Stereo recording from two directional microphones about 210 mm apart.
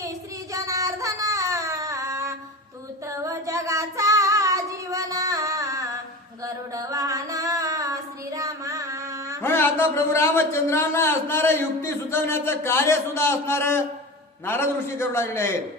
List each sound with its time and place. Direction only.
0.0 s child singing: 15° right (ahead or behind)
6.4 s female singing: 15° right (ahead or behind)
9.4 s a man's voice: 10° left (ahead or behind)